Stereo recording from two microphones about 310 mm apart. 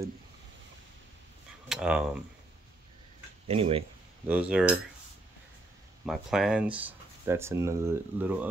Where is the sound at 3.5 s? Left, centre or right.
Centre.